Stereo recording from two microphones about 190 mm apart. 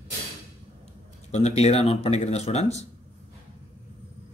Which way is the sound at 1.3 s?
35° left (ahead or behind).